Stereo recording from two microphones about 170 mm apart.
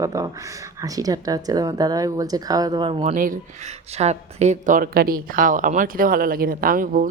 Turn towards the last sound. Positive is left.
turn(degrees=-50)  # may be behind; listen again after turning